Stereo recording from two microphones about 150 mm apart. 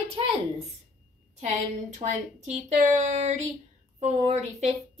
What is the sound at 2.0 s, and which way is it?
Speech, 50° right (ahead or behind).